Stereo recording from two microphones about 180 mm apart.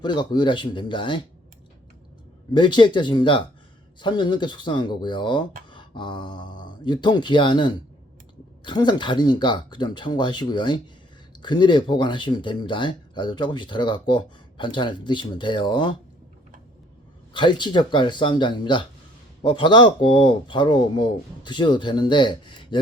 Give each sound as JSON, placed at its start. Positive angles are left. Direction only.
{"t": 0.0, "sound": "speech", "side_deg": 25}
{"t": 2.5, "sound": "speech", "side_deg": 25}
{"t": 17.3, "sound": "speech", "side_deg": 25}